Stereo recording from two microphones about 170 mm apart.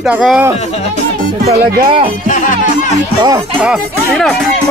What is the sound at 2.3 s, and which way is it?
Music, 50° left (ahead or behind).